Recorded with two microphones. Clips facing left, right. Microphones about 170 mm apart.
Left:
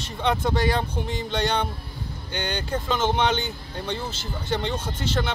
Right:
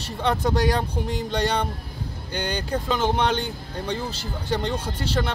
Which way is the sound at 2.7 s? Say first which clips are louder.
Right 1 dB; centre (ahead or behind).